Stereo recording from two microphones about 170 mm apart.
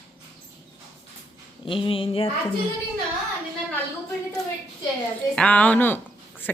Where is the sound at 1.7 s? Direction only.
30° left (ahead or behind).